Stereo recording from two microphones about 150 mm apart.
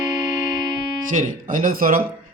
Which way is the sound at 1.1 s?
65° right (ahead or behind).